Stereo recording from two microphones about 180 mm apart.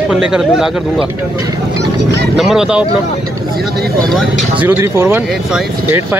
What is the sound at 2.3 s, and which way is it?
Speech, 5° right (ahead or behind).